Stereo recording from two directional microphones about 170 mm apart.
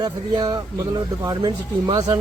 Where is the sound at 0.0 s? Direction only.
25° right (ahead or behind).